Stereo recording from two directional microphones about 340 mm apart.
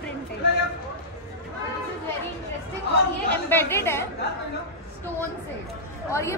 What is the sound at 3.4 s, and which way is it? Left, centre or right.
Speech, centre.